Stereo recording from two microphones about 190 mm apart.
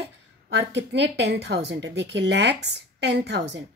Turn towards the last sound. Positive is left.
turn(degrees=-60)  # may be behind; listen again after turning